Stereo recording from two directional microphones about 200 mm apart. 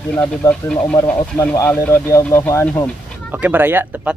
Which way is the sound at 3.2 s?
10° right (ahead or behind).